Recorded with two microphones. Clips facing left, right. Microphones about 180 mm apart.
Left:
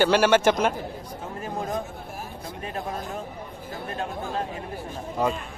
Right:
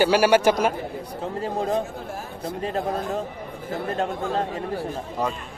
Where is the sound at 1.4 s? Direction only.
30° right (ahead or behind).